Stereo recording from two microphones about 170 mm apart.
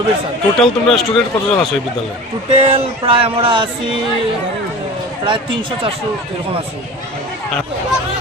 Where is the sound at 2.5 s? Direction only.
35° right (ahead or behind).